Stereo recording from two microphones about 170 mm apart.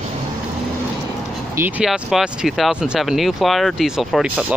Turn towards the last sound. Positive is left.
turn(degrees=-10)  # may be behind; listen again after turning